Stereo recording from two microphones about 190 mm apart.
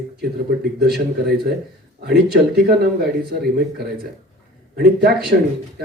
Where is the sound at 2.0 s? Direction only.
55° right (ahead or behind).